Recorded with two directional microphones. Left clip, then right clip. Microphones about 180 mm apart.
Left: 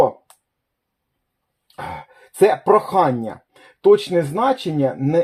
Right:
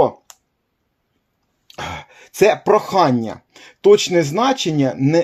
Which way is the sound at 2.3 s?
30° right (ahead or behind).